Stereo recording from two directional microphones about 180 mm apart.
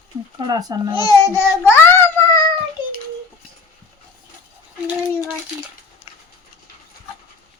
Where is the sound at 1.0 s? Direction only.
20° left (ahead or behind).